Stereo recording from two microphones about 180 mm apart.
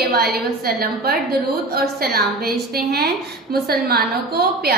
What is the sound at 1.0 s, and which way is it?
A woman's voice, 60° right (ahead or behind).